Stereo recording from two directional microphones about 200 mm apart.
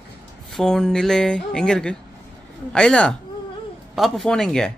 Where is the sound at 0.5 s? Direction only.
Centre (ahead or behind).